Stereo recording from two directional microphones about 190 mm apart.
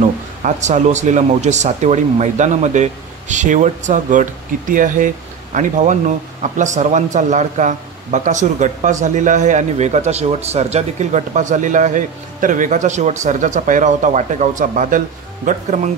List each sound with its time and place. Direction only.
0.4 s speech: 40° right (ahead or behind)